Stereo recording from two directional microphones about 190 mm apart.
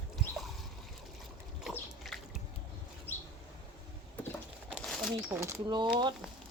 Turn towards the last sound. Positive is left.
turn(degrees=-25)  # may be behind; listen again after turning